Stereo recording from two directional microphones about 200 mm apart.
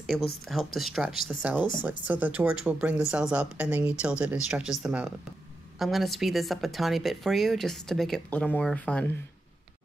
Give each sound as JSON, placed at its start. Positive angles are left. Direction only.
{"t": 0.1, "sound": "speech", "side_deg": 0}